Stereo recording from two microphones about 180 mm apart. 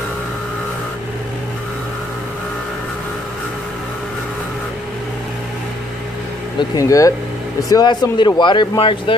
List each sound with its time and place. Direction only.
6.7 s speech: 20° left (ahead or behind)